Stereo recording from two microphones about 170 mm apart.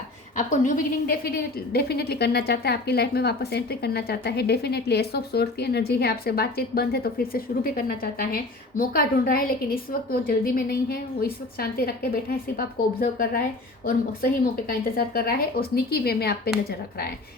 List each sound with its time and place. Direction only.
0.3 s a woman's voice: 45° left (ahead or behind); by 16.3 s 65° left (ahead or behind)